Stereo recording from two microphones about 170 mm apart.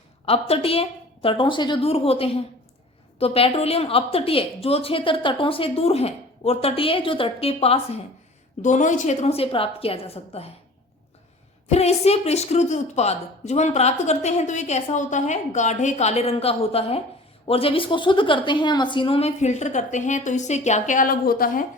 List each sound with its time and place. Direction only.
0.3 s a woman's voice: 35° left (ahead or behind)
11.7 s a woman's voice: 40° left (ahead or behind); by 21.6 s 60° left (ahead or behind)